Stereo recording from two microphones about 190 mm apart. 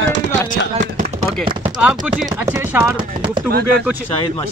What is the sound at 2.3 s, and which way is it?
Speech, 10° right (ahead or behind).